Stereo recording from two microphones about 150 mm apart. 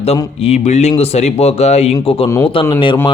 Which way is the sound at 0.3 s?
45° left (ahead or behind).